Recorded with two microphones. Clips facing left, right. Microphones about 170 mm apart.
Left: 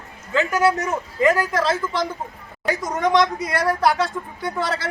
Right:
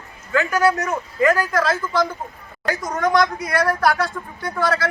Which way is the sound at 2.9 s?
20° left (ahead or behind).